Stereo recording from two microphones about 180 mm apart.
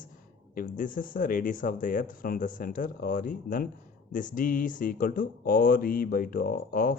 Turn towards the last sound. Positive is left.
turn(degrees=55)  # may be behind; listen again after turning